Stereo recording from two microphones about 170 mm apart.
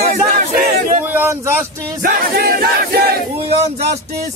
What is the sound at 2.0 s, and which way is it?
A man's voice, 60° right (ahead or behind).